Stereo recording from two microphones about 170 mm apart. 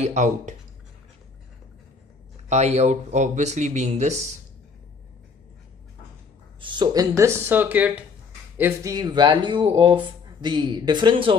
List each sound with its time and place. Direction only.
0.0 s speech: 45° right (ahead or behind)
2.5 s speech: 40° right (ahead or behind)
6.6 s speech: 25° right (ahead or behind)